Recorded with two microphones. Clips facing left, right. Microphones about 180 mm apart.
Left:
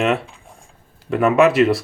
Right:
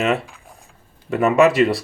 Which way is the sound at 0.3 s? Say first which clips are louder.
Even; 30° left (ahead or behind).